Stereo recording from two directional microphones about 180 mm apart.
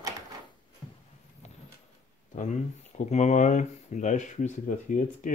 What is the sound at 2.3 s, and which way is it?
Speech, 40° left (ahead or behind).